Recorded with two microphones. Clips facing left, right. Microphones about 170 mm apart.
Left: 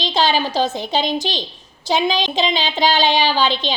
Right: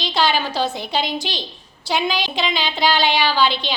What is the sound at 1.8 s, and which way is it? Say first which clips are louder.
A woman's voice: left 3 dB; 20° left (ahead or behind).